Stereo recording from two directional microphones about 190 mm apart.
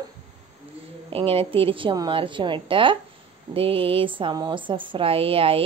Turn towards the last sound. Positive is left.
turn(degrees=-30)  # may be behind; listen again after turning